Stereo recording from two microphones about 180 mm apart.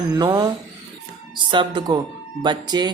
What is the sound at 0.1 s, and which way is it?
Speech, 20° right (ahead or behind).